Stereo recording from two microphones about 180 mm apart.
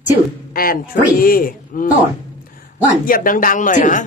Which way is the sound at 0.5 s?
55° left (ahead or behind).